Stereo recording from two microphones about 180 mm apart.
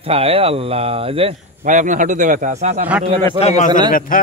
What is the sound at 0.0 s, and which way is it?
Speech, 30° right (ahead or behind).